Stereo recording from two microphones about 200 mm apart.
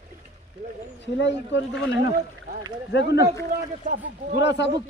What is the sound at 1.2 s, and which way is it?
Speech, 65° left (ahead or behind).